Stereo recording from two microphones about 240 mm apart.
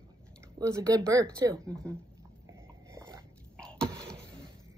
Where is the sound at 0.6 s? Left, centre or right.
Centre.